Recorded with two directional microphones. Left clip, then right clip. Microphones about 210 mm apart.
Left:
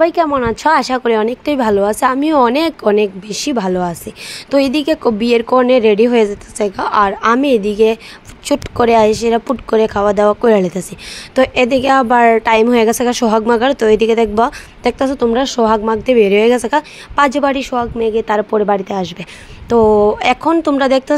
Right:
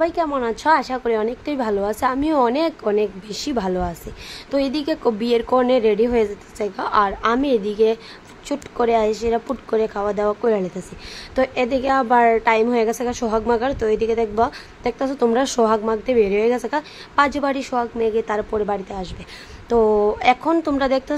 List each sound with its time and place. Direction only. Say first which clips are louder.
0.0 s a woman's voice: left 8 dB; 20° left (ahead or behind)
15.1 s a woman's voice: left 4 dB; centre (ahead or behind)